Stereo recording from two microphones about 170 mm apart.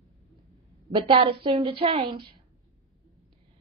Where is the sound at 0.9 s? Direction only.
30° right (ahead or behind).